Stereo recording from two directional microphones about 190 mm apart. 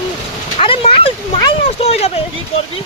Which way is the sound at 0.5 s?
30° left (ahead or behind).